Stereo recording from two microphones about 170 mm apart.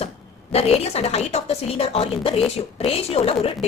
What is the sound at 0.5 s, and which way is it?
Speech, 35° left (ahead or behind).